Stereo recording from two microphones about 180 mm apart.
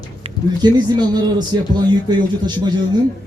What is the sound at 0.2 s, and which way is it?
A man's voice, 25° right (ahead or behind).